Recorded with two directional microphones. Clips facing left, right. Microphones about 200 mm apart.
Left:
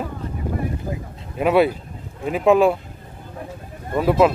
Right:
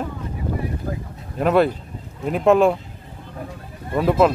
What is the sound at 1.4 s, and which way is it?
Speech, 5° left (ahead or behind).